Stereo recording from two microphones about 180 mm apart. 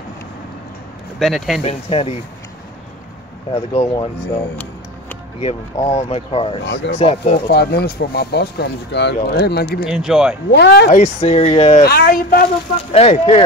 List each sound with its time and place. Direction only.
1.2 s speech: centre (ahead or behind)
1.6 s speech: 35° left (ahead or behind)
3.5 s speech: 35° left (ahead or behind)
5.4 s speech: 35° left (ahead or behind)
6.6 s speech: 75° left (ahead or behind)
7.0 s speech: 35° left (ahead or behind)
7.3 s speech: 65° left (ahead or behind)
9.8 s speech: 5° right (ahead or behind)
10.5 s speech: 65° left (ahead or behind)
10.9 s speech: 40° left (ahead or behind)
11.9 s speech: 55° left (ahead or behind)
12.9 s speech: 35° left (ahead or behind)